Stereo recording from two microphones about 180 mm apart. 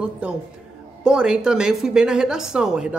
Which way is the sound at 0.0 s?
5° right (ahead or behind).